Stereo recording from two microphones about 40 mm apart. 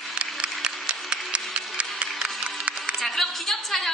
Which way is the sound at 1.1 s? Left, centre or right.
Right.